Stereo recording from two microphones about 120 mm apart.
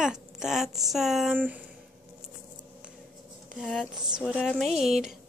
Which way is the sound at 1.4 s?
15° right (ahead or behind).